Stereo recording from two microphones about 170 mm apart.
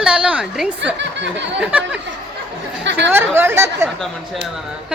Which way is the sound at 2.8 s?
90° right.